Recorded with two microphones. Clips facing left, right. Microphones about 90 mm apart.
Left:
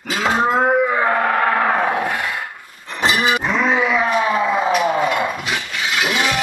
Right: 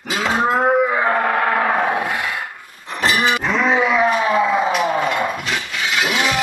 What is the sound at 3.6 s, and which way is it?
Grunt, 20° right (ahead or behind).